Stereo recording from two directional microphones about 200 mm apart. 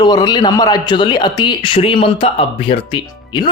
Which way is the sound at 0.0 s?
20° left (ahead or behind).